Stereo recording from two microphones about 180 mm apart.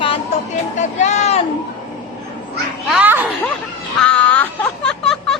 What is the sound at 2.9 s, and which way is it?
Speech, 10° right (ahead or behind).